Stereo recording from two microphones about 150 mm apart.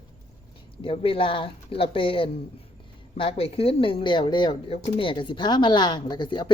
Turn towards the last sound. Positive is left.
turn(degrees=30)  # may be behind; listen again after turning